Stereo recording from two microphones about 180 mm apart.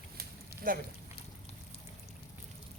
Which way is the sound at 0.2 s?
50° right (ahead or behind).